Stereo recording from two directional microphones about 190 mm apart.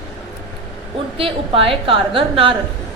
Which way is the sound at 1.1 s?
30° right (ahead or behind).